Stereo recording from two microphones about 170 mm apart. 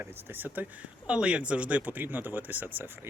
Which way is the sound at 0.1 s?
10° right (ahead or behind).